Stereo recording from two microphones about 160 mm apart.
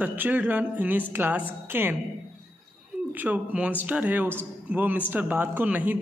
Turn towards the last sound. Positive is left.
turn(degrees=-10)  # may be behind; listen again after turning